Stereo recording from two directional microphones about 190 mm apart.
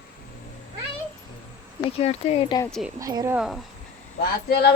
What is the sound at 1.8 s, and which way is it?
Speech, 30° left (ahead or behind).